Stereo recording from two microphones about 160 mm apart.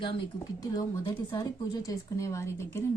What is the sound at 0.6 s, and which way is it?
Speech, 20° left (ahead or behind).